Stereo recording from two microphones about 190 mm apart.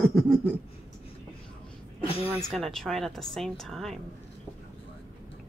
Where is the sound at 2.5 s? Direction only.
Centre (ahead or behind).